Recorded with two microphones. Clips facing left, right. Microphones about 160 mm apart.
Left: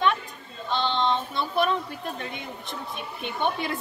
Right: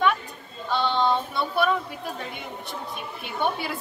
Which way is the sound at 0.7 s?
5° right (ahead or behind).